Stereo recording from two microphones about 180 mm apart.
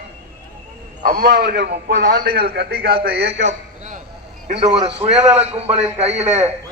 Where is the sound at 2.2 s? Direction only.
55° right (ahead or behind).